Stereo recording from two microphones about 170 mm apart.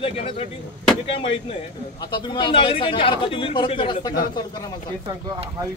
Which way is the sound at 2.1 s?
25° left (ahead or behind).